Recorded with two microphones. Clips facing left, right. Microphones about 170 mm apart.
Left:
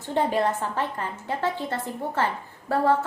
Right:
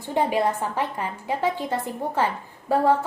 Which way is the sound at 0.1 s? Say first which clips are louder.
Right 1 dB; 10° right (ahead or behind).